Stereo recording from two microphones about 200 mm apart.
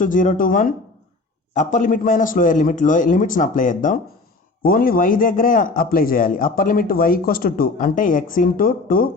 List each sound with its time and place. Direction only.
0.0 s a man's voice: 40° left (ahead or behind)